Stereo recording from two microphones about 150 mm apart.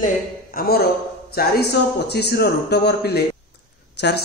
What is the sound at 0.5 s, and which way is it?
A man's voice, 90° left.